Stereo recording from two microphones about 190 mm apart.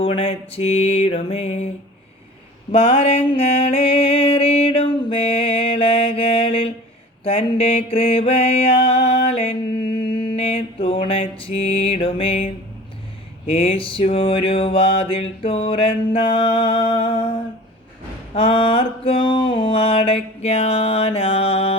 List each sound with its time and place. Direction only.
0.0 s mantra: 30° left (ahead or behind)
2.7 s music: 30° left (ahead or behind)
7.3 s mantra: 30° left (ahead or behind)
13.5 s a sound: 30° left (ahead or behind)
18.3 s mantra: 30° left (ahead or behind)